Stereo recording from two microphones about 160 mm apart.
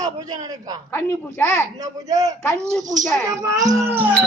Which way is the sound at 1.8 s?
20° right (ahead or behind).